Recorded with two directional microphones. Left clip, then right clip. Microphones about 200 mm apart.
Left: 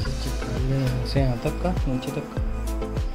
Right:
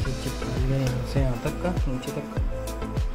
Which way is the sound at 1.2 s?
25° left (ahead or behind).